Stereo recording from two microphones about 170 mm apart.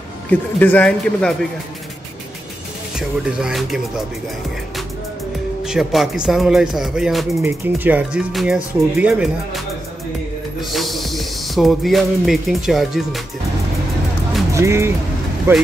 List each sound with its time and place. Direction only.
0.3 s speech: 10° left (ahead or behind)
3.0 s speech: 5° right (ahead or behind)
5.6 s speech: centre (ahead or behind)
10.6 s music: centre (ahead or behind)
14.5 s speech: 15° right (ahead or behind)